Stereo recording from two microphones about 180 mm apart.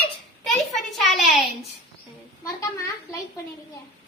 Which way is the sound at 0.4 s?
Centre (ahead or behind).